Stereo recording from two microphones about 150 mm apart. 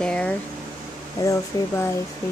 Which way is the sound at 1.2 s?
20° left (ahead or behind).